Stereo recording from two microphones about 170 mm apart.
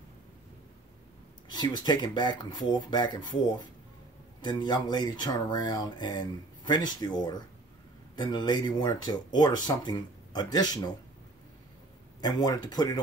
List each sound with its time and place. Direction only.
1.5 s speech: 25° left (ahead or behind)
12.2 s speech: 25° left (ahead or behind)